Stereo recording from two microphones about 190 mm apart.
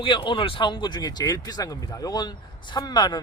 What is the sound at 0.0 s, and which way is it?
Speech, 25° left (ahead or behind).